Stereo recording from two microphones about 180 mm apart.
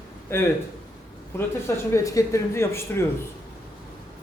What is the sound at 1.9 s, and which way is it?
Speech, 15° left (ahead or behind).